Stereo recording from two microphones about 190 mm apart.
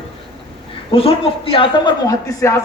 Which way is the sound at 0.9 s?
30° left (ahead or behind).